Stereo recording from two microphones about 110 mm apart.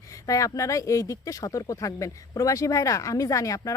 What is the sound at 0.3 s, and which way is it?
Speech, 30° left (ahead or behind).